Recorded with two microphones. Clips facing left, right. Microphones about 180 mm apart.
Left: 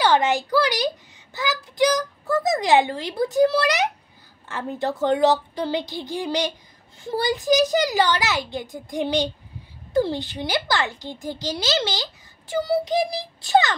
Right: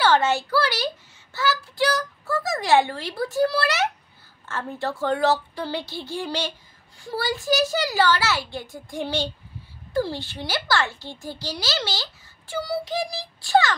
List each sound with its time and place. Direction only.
0.0 s a child's voice: 15° left (ahead or behind)